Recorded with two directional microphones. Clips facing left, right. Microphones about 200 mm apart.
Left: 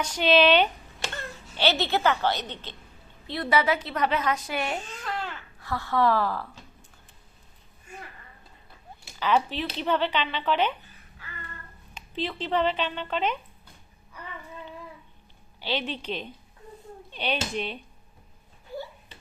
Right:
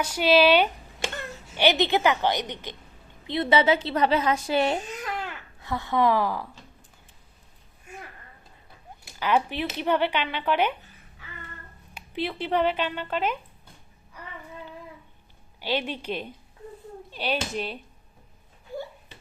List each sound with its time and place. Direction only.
0.0 s a woman's voice: 10° right (ahead or behind); by 4.8 s 30° right (ahead or behind)
5.0 s babbling: 10° right (ahead or behind)
5.5 s speech: 20° right (ahead or behind)
9.1 s speech: 10° right (ahead or behind)
11.9 s speech: 10° right (ahead or behind)
15.6 s speech: 10° right (ahead or behind)